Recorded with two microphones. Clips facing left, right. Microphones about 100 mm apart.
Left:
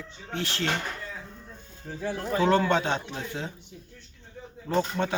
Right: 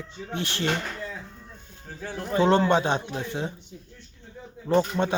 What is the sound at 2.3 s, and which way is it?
Speech, 25° right (ahead or behind).